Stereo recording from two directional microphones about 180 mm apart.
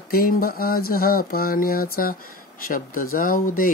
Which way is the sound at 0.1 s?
55° left (ahead or behind).